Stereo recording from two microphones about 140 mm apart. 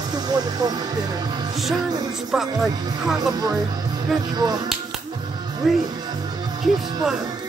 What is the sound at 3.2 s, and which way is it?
Speech, 25° right (ahead or behind).